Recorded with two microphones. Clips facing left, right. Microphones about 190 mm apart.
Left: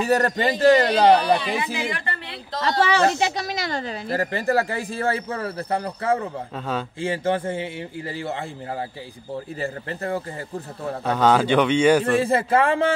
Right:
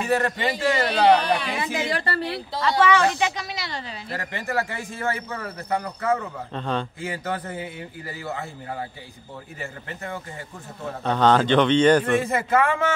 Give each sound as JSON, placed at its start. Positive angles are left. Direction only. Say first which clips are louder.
{"t": 0.0, "sound": "speech", "louder": "left 3 dB", "side_deg": 40}
{"t": 1.1, "sound": "speech", "louder": "left 2 dB", "side_deg": 10}
{"t": 1.6, "sound": "a woman's voice", "louder": "right 1 dB", "side_deg": -35}
{"t": 2.6, "sound": "speech", "louder": "even", "side_deg": 35}
{"t": 6.5, "sound": "a man's voice", "louder": "right 3 dB", "side_deg": 5}
{"t": 7.0, "sound": "speech", "louder": "left 6 dB", "side_deg": 25}
{"t": 9.6, "sound": "speech", "louder": "left 4 dB", "side_deg": 35}
{"t": 11.1, "sound": "speech", "louder": "even", "side_deg": 10}
{"t": 12.0, "sound": "speech", "louder": "left 3 dB", "side_deg": 30}